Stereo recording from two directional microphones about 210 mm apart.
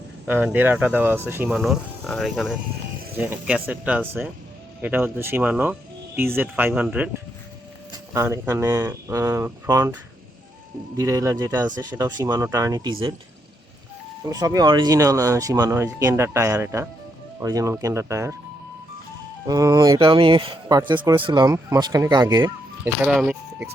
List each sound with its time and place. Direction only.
0.3 s speech: 10° right (ahead or behind)
8.1 s speech: 15° right (ahead or behind)
10.9 s speech: 15° right (ahead or behind)
14.3 s speech: 15° right (ahead or behind)
19.5 s speech: 15° right (ahead or behind)